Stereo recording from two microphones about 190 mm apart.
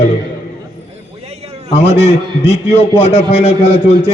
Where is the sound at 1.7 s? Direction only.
35° left (ahead or behind).